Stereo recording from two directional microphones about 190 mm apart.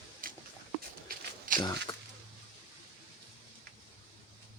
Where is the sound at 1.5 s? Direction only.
45° right (ahead or behind).